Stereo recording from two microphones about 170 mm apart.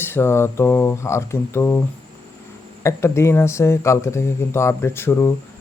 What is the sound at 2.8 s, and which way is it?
Speech, 15° left (ahead or behind).